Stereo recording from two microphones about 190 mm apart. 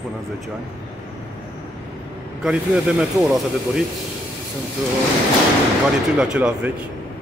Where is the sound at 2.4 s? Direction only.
5° right (ahead or behind).